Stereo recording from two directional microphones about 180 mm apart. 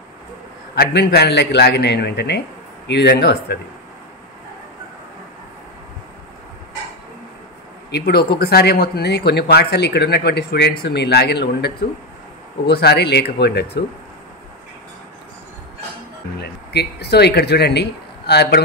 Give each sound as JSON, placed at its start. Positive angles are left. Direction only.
{"t": 0.7, "sound": "speech", "side_deg": 65}
{"t": 7.9, "sound": "speech", "side_deg": 65}
{"t": 16.3, "sound": "speech", "side_deg": 65}